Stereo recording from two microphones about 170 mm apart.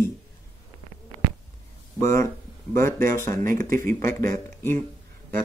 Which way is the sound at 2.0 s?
15° left (ahead or behind).